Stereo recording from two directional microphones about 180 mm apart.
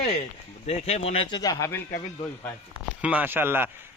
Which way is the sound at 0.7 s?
35° left (ahead or behind).